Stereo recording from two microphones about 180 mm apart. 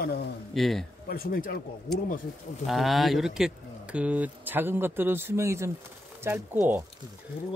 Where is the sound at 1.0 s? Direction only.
55° left (ahead or behind).